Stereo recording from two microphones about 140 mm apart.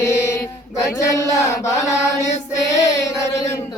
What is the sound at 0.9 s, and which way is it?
Mantra, 20° left (ahead or behind).